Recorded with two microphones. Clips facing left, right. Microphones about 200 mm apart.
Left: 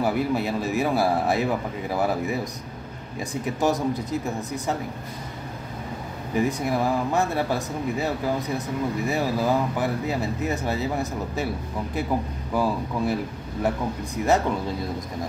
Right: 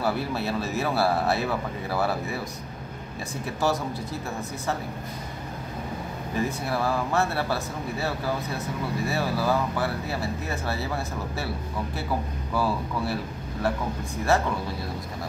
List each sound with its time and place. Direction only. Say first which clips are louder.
0.0 s speech: left 4 dB; 15° left (ahead or behind)
3.4 s speech: left 3 dB; 20° left (ahead or behind)
6.3 s speech: left 4 dB; 15° left (ahead or behind)
12.5 s speech: left 3 dB; 15° left (ahead or behind)